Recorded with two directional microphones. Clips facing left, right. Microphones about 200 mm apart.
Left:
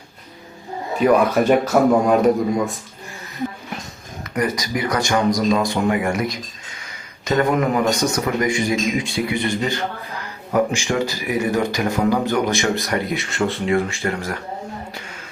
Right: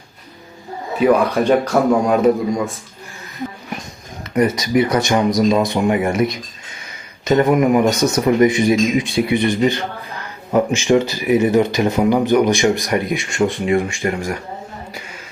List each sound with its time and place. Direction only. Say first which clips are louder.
0.9 s a man's voice: right 1 dB; centre (ahead or behind)
4.4 s speech: right 7 dB; 25° right (ahead or behind)